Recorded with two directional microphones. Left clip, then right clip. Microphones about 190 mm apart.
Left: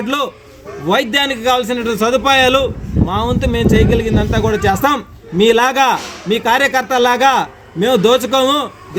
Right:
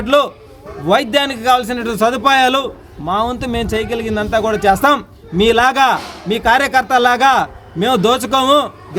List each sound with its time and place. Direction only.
0.0 s speech: 25° right (ahead or behind)